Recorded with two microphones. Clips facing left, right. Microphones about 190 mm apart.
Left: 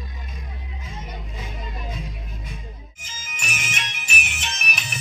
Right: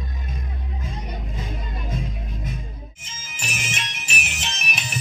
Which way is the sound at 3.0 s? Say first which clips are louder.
Left 2 dB; 30° right (ahead or behind).